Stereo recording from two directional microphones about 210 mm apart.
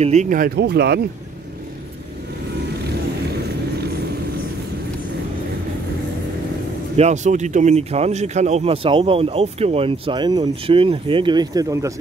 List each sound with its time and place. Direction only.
0.0 s speech: 35° right (ahead or behind); by 1.0 s 50° right (ahead or behind)
7.0 s speech: 35° right (ahead or behind); by 11.9 s 15° right (ahead or behind)